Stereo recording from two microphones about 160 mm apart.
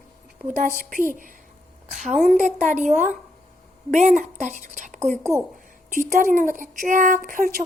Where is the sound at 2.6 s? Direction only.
50° right (ahead or behind).